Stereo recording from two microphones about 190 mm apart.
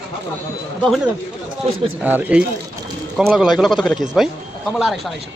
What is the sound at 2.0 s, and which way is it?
A man's voice, 10° right (ahead or behind).